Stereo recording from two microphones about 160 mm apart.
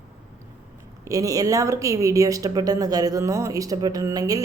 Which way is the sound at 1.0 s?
20° right (ahead or behind).